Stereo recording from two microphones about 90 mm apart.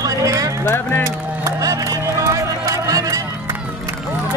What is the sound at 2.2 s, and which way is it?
Music, 35° right (ahead or behind).